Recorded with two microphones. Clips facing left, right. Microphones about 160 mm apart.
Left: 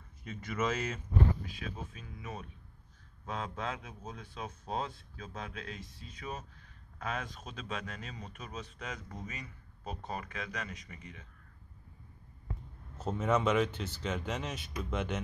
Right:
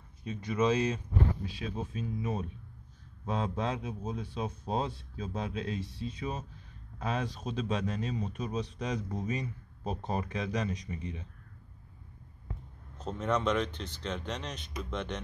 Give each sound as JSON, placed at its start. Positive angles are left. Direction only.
{"t": 0.2, "sound": "speech", "side_deg": -15}
{"t": 1.4, "sound": "speech", "side_deg": -30}
{"t": 8.7, "sound": "speech", "side_deg": -20}
{"t": 12.9, "sound": "speech", "side_deg": 5}